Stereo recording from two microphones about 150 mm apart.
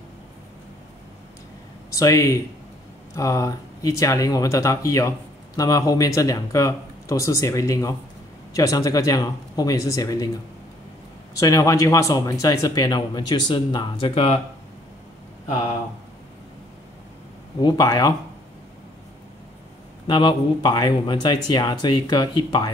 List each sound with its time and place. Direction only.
2.0 s speech: 20° left (ahead or behind)
11.3 s speech: 25° left (ahead or behind); by 14.4 s 40° left (ahead or behind)
17.6 s speech: 30° left (ahead or behind)
20.1 s speech: 30° left (ahead or behind)